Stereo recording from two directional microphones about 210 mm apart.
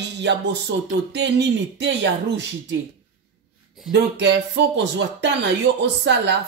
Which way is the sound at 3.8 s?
60° right (ahead or behind).